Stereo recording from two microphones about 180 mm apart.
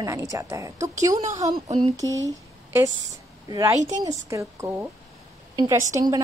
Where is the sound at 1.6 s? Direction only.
40° right (ahead or behind).